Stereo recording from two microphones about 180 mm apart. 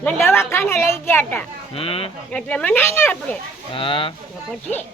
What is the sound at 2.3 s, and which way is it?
A woman's voice, 5° left (ahead or behind).